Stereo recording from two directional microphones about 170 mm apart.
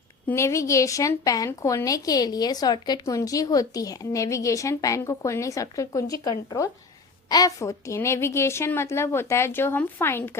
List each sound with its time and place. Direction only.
0.3 s a woman's voice: 15° left (ahead or behind)